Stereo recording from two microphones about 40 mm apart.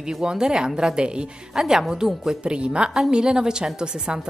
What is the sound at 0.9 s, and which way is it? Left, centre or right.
Speech, right.